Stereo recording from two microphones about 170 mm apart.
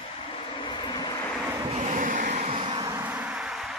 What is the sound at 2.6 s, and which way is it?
Vehicle, 25° right (ahead or behind).